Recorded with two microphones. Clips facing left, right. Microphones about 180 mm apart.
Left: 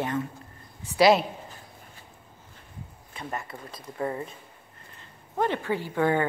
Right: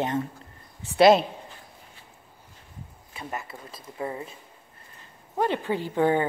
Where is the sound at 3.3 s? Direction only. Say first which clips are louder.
Even; 20° right (ahead or behind).